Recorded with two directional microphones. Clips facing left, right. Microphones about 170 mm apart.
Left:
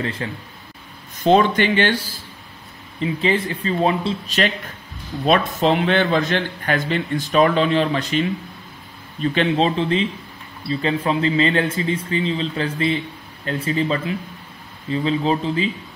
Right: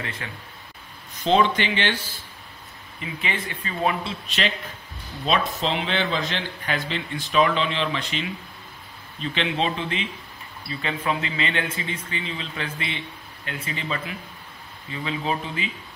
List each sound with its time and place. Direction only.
0.0 s speech: 35° left (ahead or behind)
1.2 s a man's voice: 50° left (ahead or behind)
3.0 s speech: 30° left (ahead or behind)
5.2 s a man's voice: 55° left (ahead or behind); by 15.7 s 30° left (ahead or behind)